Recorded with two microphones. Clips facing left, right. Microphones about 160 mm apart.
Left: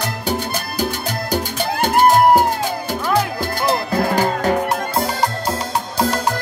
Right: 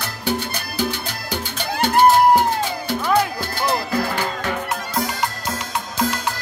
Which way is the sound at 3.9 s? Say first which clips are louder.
Left 5 dB; 45° left (ahead or behind).